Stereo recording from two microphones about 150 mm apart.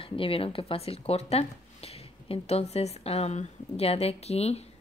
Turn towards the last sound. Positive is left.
turn(degrees=45)  # may be behind; listen again after turning